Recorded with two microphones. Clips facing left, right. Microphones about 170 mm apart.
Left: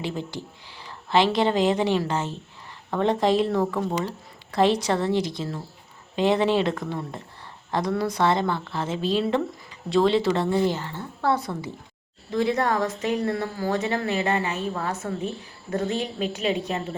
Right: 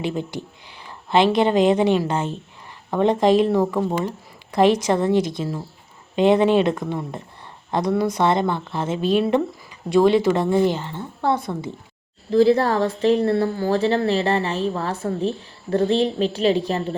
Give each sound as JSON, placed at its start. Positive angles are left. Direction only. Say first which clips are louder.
{"t": 0.0, "sound": "speech", "louder": "right 5 dB", "side_deg": -20}
{"t": 12.3, "sound": "speech", "louder": "right 7 dB", "side_deg": -30}